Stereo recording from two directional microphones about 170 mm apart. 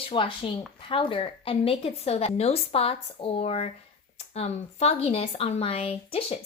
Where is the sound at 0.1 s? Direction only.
30° left (ahead or behind).